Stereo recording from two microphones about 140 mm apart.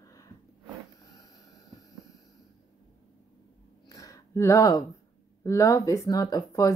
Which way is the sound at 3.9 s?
25° left (ahead or behind).